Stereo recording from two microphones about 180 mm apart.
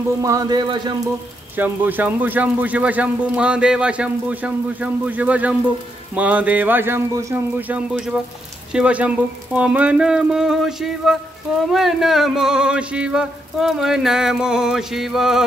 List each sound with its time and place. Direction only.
0.2 s speech: 20° right (ahead or behind)
1.6 s speech: 10° right (ahead or behind)
8.7 s a sound: 5° right (ahead or behind)